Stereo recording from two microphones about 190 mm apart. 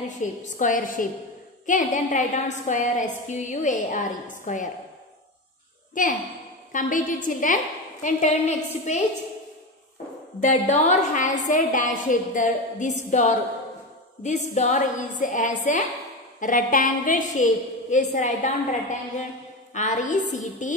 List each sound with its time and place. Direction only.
0.2 s a woman's voice: 45° left (ahead or behind)
6.0 s a woman's voice: 45° left (ahead or behind)
10.4 s a woman's voice: 40° left (ahead or behind)